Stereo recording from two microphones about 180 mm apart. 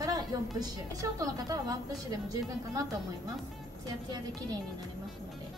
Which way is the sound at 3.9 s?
20° right (ahead or behind).